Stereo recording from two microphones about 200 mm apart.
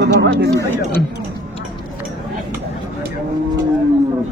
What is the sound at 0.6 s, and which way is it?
Speech, 10° left (ahead or behind).